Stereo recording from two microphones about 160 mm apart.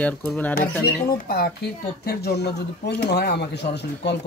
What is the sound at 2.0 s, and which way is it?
Speech, 85° left.